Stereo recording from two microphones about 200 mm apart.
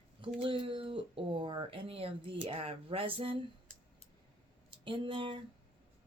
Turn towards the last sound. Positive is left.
turn(degrees=-25)  # may be behind; listen again after turning